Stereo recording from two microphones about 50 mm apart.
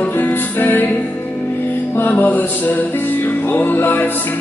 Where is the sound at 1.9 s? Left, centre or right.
Left.